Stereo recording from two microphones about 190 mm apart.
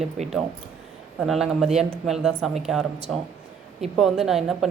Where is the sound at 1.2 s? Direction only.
Centre (ahead or behind).